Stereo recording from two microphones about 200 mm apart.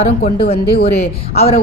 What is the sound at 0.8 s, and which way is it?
Speech, 50° left (ahead or behind).